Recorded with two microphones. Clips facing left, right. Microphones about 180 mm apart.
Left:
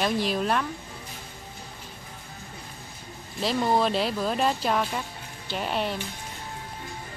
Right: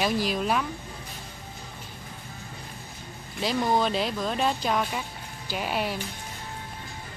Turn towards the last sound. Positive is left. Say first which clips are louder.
# left 1 dB
turn(degrees=-5)  # may be behind; listen again after turning